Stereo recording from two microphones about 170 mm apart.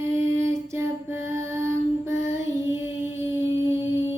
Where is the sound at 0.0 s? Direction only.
15° right (ahead or behind).